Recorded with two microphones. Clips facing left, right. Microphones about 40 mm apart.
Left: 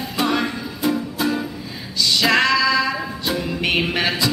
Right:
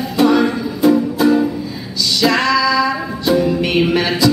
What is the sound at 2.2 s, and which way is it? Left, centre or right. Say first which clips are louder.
Music: right 3 dB; centre.